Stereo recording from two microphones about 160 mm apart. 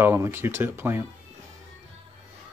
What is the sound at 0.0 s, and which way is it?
Speech, 15° right (ahead or behind).